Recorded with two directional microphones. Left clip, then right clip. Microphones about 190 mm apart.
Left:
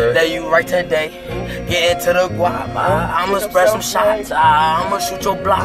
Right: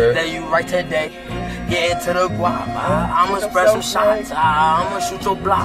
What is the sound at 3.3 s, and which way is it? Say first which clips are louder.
Speech: left 1 dB; 45° left (ahead or behind).